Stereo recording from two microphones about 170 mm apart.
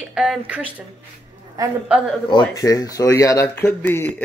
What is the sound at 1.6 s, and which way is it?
Speech, 20° right (ahead or behind).